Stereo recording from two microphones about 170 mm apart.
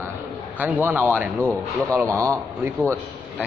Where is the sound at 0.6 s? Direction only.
10° right (ahead or behind).